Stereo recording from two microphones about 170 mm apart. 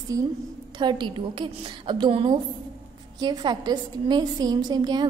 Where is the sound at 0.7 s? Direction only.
25° right (ahead or behind).